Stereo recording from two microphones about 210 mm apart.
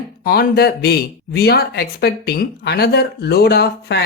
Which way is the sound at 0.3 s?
50° left (ahead or behind).